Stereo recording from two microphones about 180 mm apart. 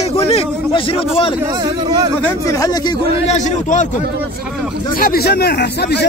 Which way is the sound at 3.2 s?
40° left (ahead or behind).